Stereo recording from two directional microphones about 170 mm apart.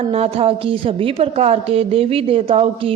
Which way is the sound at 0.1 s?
35° right (ahead or behind).